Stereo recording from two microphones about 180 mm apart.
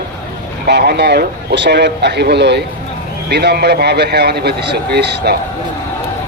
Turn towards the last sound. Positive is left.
turn(degrees=-65)  # may be behind; listen again after turning